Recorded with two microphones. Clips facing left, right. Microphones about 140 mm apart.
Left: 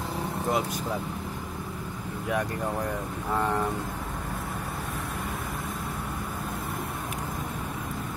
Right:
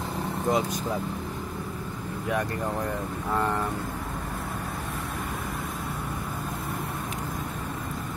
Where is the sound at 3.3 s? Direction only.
10° left (ahead or behind).